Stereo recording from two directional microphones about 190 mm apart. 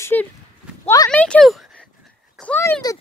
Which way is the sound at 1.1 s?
5° left (ahead or behind).